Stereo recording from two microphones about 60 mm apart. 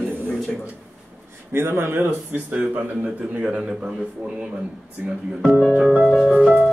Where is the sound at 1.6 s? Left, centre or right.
Right.